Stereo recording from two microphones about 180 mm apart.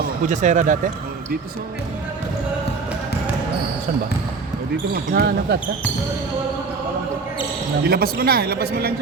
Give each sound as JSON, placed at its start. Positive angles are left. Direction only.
{"t": 0.3, "sound": "speech", "side_deg": -45}
{"t": 5.1, "sound": "speech", "side_deg": -65}
{"t": 7.9, "sound": "speech", "side_deg": -55}